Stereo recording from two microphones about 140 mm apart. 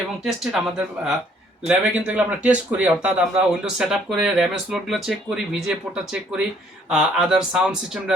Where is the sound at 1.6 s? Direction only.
10° right (ahead or behind).